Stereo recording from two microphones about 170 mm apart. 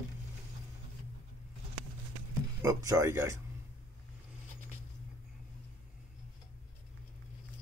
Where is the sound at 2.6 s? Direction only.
20° right (ahead or behind).